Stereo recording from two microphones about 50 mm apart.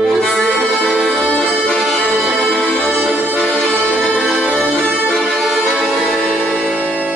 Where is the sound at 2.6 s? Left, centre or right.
Centre.